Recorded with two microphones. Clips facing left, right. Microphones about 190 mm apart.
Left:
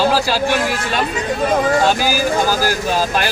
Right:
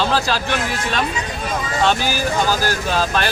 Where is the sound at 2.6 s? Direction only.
10° left (ahead or behind).